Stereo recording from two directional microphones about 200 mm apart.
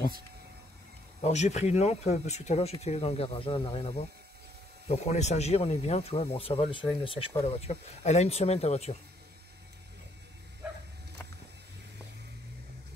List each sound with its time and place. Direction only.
1.2 s speech: 35° left (ahead or behind)